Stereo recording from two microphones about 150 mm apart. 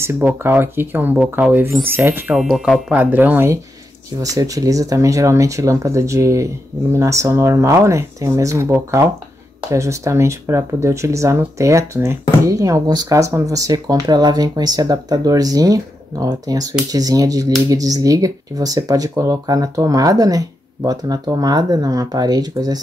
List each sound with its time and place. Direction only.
0.0 s speech: 15° right (ahead or behind)
2.5 s speech: centre (ahead or behind)
2.9 s speech: 10° right (ahead or behind)